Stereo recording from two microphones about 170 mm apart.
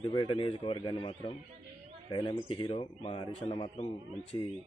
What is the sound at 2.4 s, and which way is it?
Speech, 30° left (ahead or behind).